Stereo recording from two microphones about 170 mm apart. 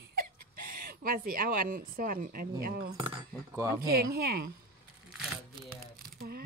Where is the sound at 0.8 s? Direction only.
55° right (ahead or behind).